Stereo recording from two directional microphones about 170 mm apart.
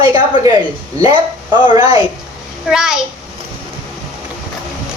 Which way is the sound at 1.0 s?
25° right (ahead or behind).